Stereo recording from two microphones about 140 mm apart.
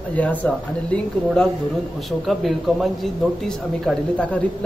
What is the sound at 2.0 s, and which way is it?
A man's voice, centre (ahead or behind).